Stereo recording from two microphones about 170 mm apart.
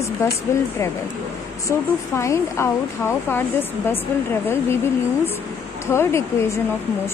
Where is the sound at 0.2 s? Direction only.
15° left (ahead or behind).